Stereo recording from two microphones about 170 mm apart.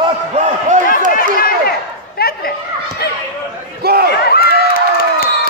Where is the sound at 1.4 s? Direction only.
65° left (ahead or behind).